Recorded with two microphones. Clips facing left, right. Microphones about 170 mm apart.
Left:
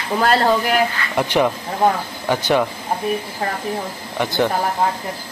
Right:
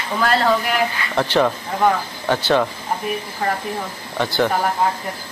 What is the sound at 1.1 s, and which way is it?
Speech, 10° left (ahead or behind).